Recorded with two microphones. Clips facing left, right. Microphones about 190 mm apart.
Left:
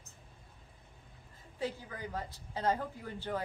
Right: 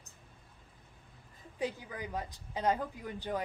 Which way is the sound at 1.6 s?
15° right (ahead or behind).